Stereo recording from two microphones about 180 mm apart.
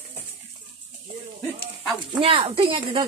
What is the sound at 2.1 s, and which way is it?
Speech, 30° right (ahead or behind).